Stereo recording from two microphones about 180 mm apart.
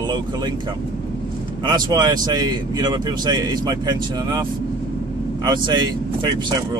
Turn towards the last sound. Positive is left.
turn(degrees=-25)  # may be behind; listen again after turning